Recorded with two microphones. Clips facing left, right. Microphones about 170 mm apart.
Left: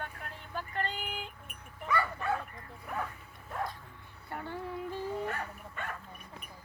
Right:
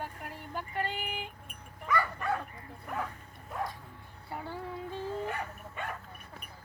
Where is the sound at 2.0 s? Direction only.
5° left (ahead or behind).